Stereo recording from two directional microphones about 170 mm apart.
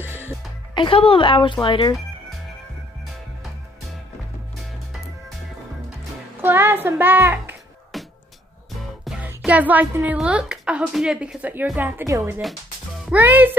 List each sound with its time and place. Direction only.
0.0 s music: 15° right (ahead or behind)
0.7 s speech: 30° left (ahead or behind)
6.4 s speech: 10° right (ahead or behind)
7.9 s music: centre (ahead or behind)
8.7 s speech: centre (ahead or behind)